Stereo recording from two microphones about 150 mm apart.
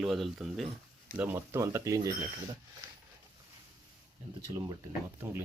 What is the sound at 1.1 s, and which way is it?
Speech, 15° right (ahead or behind).